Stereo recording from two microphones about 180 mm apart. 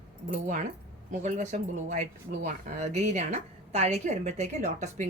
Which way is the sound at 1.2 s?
40° right (ahead or behind).